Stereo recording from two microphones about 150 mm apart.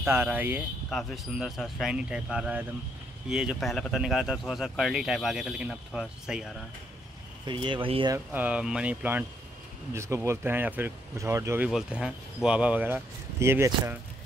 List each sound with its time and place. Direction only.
0.0 s speech: 15° right (ahead or behind)
0.8 s speech: centre (ahead or behind)
7.4 s speech: 30° right (ahead or behind)
8.1 s speech: 10° right (ahead or behind)
11.7 s speech: 5° right (ahead or behind)